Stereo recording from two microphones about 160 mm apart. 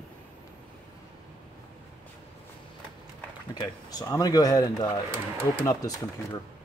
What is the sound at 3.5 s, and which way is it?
Speech, 25° left (ahead or behind).